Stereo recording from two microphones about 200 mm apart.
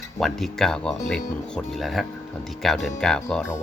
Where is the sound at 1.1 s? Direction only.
5° left (ahead or behind).